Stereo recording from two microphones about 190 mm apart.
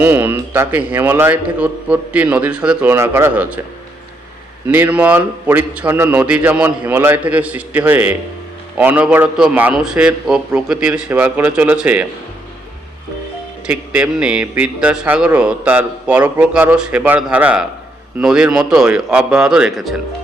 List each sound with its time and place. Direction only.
0.0 s a man's voice: 10° right (ahead or behind)
4.7 s a man's voice: 10° right (ahead or behind)
13.7 s a man's voice: 5° right (ahead or behind)